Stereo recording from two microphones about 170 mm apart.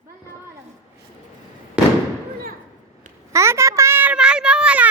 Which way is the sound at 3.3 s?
15° right (ahead or behind).